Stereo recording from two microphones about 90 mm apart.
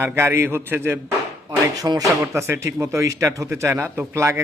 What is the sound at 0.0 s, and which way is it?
Speech, 25° right (ahead or behind).